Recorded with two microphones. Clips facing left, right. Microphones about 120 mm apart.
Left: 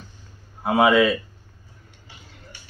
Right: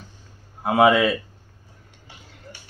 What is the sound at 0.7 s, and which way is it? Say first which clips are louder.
Speech: even; centre (ahead or behind).